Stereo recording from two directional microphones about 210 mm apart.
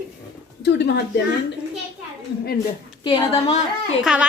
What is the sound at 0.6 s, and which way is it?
Speech, 55° left (ahead or behind).